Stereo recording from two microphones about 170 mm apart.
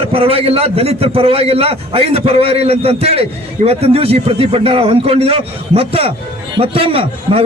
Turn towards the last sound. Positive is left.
turn(degrees=-35)  # may be behind; listen again after turning